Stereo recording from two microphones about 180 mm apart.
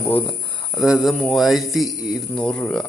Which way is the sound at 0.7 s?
Centre (ahead or behind).